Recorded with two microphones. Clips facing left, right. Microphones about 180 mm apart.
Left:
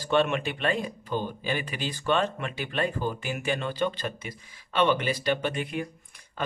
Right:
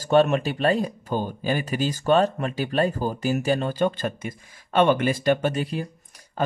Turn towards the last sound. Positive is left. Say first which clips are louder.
# right 6 dB
turn(degrees=-35)  # may be behind; listen again after turning